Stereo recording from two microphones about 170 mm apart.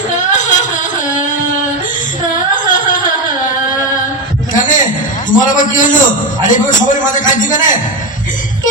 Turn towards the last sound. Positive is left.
turn(degrees=50)  # may be behind; listen again after turning